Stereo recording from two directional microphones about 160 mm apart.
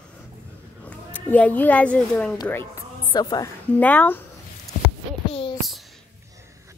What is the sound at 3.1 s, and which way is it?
Speech, 25° left (ahead or behind).